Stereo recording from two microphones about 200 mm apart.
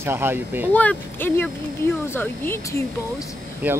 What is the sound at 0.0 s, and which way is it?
Speech, 10° right (ahead or behind).